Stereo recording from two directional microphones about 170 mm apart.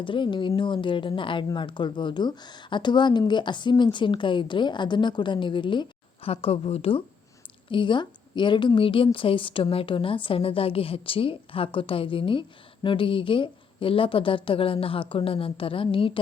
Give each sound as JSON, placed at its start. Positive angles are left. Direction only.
{"t": 0.0, "sound": "a woman's voice", "side_deg": 30}